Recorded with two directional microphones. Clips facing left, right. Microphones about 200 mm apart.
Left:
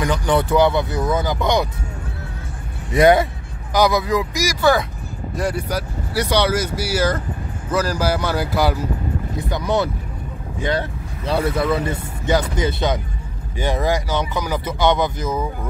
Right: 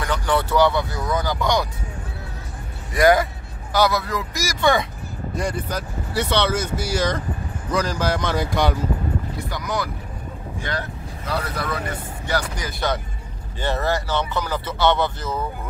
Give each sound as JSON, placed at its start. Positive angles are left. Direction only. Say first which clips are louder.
{"t": 0.0, "sound": "speech", "louder": "left 4 dB", "side_deg": 15}
{"t": 2.9, "sound": "speech", "louder": "left 3 dB", "side_deg": 25}
{"t": 9.4, "sound": "speech", "louder": "left 10 dB", "side_deg": 25}